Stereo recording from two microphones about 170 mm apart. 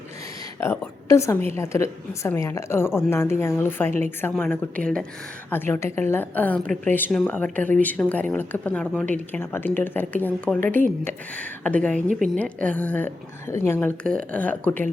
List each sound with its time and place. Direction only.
0.6 s a woman's voice: 15° left (ahead or behind)